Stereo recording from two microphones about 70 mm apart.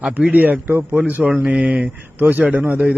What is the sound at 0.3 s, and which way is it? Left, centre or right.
Speech, right.